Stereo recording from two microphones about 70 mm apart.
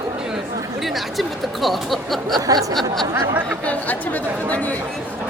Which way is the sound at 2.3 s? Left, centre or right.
Right.